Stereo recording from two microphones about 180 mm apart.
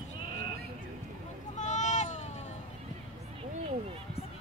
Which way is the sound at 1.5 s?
40° left (ahead or behind).